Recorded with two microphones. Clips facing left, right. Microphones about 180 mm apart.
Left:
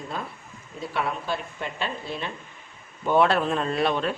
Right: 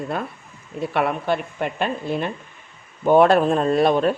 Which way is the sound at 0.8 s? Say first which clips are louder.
Right 7 dB; 60° right (ahead or behind).